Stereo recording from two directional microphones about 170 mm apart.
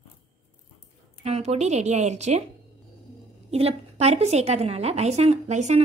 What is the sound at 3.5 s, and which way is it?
A woman's voice, 35° right (ahead or behind).